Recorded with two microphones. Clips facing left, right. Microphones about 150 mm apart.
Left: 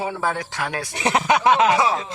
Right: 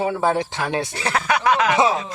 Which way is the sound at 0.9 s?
20° left (ahead or behind).